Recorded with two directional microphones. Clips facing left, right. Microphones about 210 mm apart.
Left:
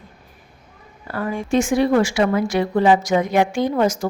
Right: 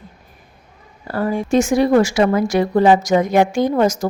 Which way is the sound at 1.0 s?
35° right (ahead or behind).